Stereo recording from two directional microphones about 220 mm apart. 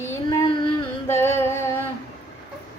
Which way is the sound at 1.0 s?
10° left (ahead or behind).